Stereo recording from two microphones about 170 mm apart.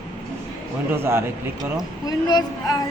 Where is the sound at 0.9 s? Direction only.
15° right (ahead or behind).